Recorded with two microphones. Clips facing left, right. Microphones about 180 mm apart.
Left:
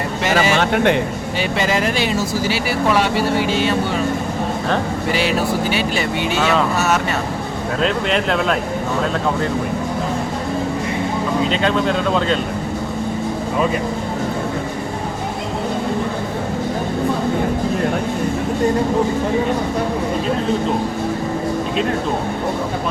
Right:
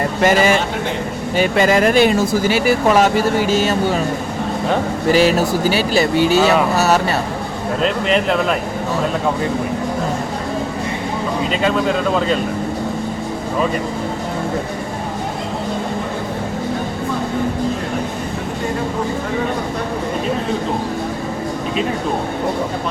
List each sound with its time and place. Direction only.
0.2 s speech: 50° right (ahead or behind)
5.1 s speech: 40° right (ahead or behind)
7.8 s speech: centre (ahead or behind)
11.6 s speech: 5° right (ahead or behind)